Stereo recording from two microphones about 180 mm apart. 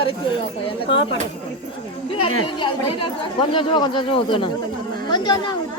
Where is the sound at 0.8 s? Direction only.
90° left.